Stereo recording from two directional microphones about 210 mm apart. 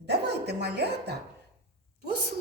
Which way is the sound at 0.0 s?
50° right (ahead or behind).